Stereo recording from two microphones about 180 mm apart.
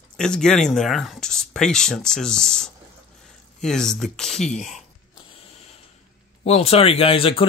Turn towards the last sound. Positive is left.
turn(degrees=30)  # may be behind; listen again after turning